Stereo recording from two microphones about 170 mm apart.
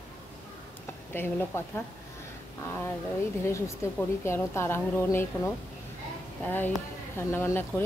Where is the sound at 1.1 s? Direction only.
15° left (ahead or behind).